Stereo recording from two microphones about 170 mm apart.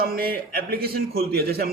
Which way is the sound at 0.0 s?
60° right (ahead or behind).